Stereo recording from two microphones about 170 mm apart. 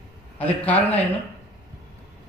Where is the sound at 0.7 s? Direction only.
10° left (ahead or behind).